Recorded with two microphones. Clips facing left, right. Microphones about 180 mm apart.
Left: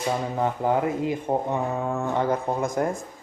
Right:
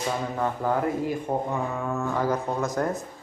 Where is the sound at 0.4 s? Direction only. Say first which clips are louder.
Left 2 dB; 20° left (ahead or behind).